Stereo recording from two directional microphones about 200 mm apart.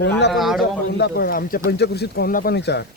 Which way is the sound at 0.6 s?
55° left (ahead or behind).